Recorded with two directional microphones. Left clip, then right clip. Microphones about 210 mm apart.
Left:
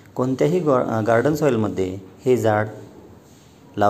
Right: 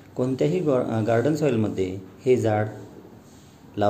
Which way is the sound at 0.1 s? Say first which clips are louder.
Left 4 dB; 10° left (ahead or behind).